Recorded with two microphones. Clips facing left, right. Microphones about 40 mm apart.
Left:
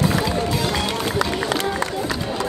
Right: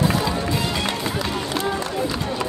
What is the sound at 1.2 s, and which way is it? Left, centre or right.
Run, left.